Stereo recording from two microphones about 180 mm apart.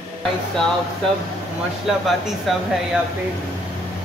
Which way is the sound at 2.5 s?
Centre (ahead or behind).